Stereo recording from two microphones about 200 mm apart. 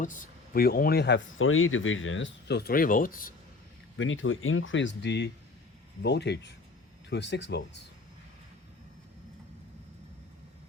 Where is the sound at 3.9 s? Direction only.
75° left (ahead or behind).